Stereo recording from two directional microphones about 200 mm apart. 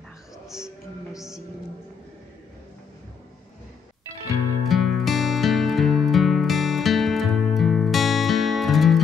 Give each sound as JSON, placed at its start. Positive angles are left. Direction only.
{"t": 0.5, "sound": "music", "side_deg": 0}
{"t": 4.6, "sound": "music", "side_deg": 0}